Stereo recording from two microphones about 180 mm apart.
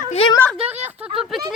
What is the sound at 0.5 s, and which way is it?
Speech, 35° right (ahead or behind).